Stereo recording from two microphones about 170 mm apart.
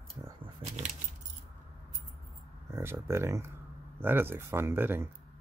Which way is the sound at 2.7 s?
15° right (ahead or behind).